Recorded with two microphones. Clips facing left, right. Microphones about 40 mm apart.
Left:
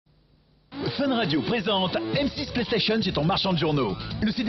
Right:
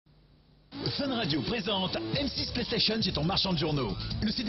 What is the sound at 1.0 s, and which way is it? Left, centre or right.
Speech, left.